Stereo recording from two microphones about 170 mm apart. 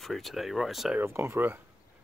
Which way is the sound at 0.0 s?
Centre (ahead or behind).